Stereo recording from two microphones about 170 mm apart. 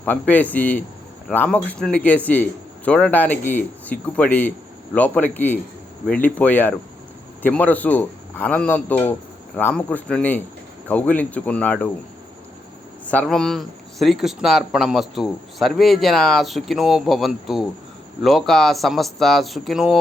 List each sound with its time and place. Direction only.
0.0 s a man's voice: 10° left (ahead or behind)
13.1 s speech: 5° left (ahead or behind)